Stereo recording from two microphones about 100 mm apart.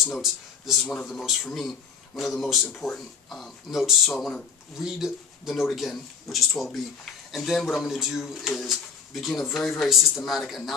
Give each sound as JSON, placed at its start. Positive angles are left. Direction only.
{"t": 0.0, "sound": "a man's voice", "side_deg": 0}